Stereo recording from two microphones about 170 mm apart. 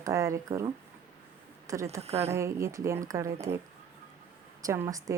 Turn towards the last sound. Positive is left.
turn(degrees=-20)  # may be behind; listen again after turning